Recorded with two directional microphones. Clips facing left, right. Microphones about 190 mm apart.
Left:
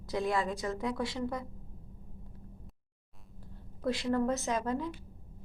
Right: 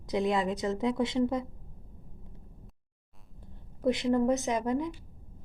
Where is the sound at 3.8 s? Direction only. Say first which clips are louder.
Right 4 dB; 20° right (ahead or behind).